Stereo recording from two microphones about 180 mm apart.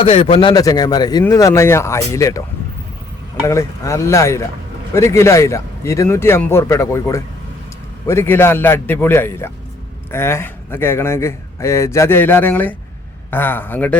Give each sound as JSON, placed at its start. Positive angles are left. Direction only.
{"t": 0.0, "sound": "a man's voice", "side_deg": 30}
{"t": 3.4, "sound": "speech", "side_deg": 15}